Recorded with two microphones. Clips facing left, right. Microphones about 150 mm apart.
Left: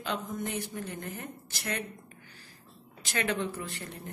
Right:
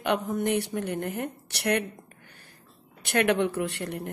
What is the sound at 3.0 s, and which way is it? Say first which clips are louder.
Speech: right 8 dB; 60° right (ahead or behind).